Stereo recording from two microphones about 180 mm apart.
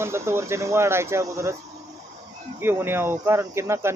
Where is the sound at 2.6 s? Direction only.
10° right (ahead or behind).